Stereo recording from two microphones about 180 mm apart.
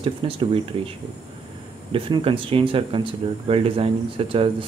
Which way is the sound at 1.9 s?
30° right (ahead or behind).